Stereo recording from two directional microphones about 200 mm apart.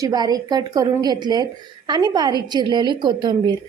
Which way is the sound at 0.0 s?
20° right (ahead or behind).